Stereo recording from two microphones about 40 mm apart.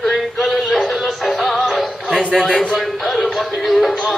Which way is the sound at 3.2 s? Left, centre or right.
Centre.